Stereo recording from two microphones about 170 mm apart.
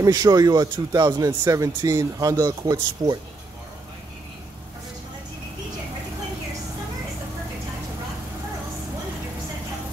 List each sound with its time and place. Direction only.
0.0 s a man's voice: 20° right (ahead or behind)